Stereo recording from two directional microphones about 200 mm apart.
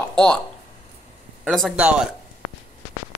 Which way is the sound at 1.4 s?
Centre (ahead or behind).